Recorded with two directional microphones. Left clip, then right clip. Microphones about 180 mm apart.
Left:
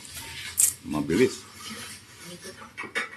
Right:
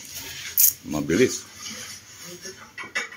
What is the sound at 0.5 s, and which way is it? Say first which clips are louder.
Coin: right 3 dB; 20° right (ahead or behind).